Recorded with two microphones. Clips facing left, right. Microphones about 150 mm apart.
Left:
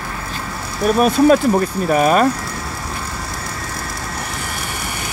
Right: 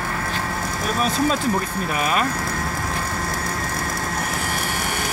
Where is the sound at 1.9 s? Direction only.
45° left (ahead or behind).